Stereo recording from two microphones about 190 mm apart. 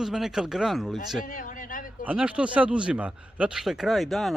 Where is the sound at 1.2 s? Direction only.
45° left (ahead or behind).